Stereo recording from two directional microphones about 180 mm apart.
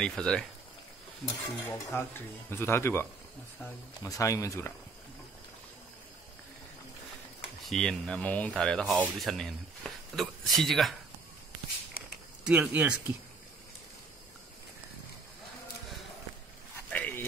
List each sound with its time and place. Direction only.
0.0 s speech: 5° left (ahead or behind)
1.2 s stir: 10° left (ahead or behind)
7.6 s speech: centre (ahead or behind)
12.4 s speech: 5° right (ahead or behind)
16.9 s a sound: 10° left (ahead or behind)